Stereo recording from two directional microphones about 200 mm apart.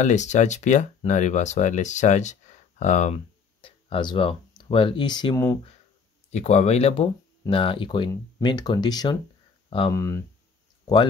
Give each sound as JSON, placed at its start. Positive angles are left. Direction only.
{"t": 0.0, "sound": "speech", "side_deg": 35}
{"t": 3.6, "sound": "speech", "side_deg": 25}
{"t": 6.3, "sound": "speech", "side_deg": 35}